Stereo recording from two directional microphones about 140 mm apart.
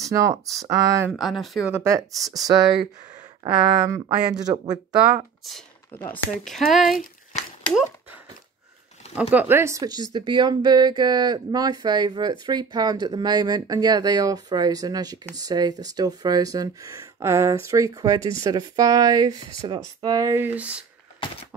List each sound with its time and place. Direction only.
0.1 s speech: 20° right (ahead or behind)
1.1 s speech: centre (ahead or behind)
1.7 s speech: 20° right (ahead or behind)
6.0 s speech: 5° left (ahead or behind)
9.3 s speech: 15° right (ahead or behind)